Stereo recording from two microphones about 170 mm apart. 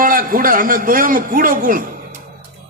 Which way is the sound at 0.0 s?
55° right (ahead or behind).